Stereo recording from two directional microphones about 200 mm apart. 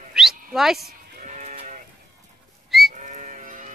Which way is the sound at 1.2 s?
40° right (ahead or behind).